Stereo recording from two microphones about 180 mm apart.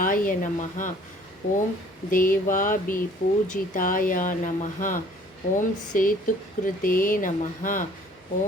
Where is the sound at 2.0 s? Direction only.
50° left (ahead or behind).